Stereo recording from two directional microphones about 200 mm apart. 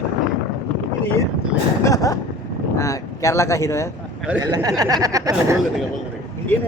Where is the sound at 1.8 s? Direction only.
15° left (ahead or behind).